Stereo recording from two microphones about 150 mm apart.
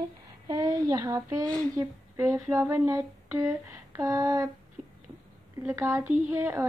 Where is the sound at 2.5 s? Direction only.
20° right (ahead or behind).